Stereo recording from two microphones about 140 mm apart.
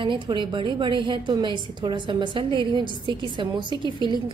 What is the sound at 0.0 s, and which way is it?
A woman's voice, 35° right (ahead or behind).